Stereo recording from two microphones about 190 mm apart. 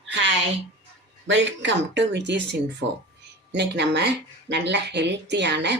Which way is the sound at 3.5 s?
65° right (ahead or behind).